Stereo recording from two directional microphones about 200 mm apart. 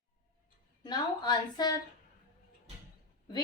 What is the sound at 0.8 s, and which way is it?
Speech, 20° left (ahead or behind).